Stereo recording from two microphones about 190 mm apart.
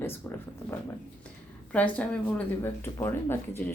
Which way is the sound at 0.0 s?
10° left (ahead or behind).